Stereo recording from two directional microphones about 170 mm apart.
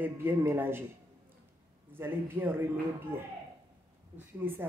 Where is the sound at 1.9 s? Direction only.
15° right (ahead or behind).